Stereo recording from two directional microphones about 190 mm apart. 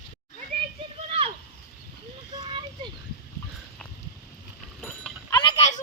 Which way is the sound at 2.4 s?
25° right (ahead or behind).